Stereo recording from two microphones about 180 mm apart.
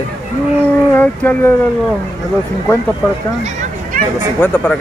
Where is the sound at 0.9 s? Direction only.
10° left (ahead or behind).